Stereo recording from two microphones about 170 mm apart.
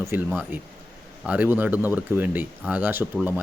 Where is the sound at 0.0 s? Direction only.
15° right (ahead or behind).